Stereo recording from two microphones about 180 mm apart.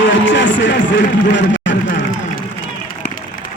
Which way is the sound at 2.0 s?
50° left (ahead or behind).